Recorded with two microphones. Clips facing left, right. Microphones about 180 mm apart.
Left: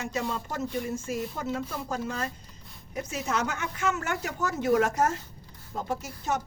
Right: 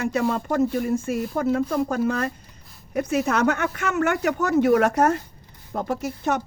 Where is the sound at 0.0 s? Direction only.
60° right (ahead or behind).